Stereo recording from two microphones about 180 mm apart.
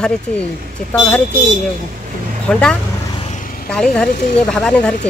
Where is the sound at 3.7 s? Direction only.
5° left (ahead or behind).